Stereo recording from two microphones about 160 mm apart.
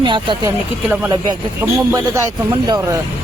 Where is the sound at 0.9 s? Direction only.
20° right (ahead or behind).